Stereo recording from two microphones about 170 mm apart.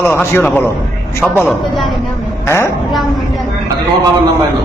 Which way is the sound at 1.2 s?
Centre (ahead or behind).